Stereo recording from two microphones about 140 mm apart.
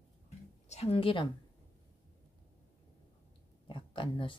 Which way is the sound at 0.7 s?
45° left (ahead or behind).